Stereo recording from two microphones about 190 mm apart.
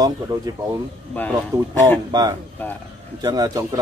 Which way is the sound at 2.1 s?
20° right (ahead or behind).